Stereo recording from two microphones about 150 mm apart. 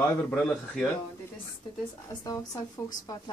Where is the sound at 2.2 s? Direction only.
20° left (ahead or behind).